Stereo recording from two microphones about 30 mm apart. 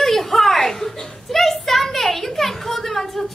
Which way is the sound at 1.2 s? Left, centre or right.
Centre.